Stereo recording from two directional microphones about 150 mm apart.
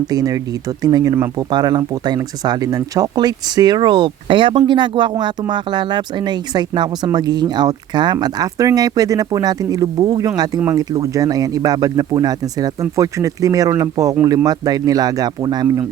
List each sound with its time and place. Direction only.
0.1 s speech: 25° right (ahead or behind)